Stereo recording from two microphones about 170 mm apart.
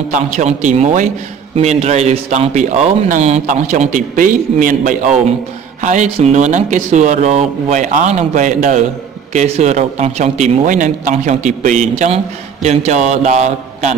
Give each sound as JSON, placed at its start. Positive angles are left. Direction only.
{"t": 0.1, "sound": "a man's voice", "side_deg": -45}